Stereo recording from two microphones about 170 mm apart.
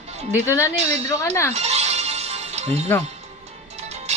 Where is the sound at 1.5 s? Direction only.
40° right (ahead or behind).